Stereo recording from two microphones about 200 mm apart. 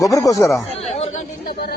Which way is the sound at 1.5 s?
50° left (ahead or behind).